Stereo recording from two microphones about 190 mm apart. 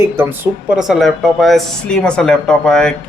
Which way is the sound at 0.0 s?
10° right (ahead or behind).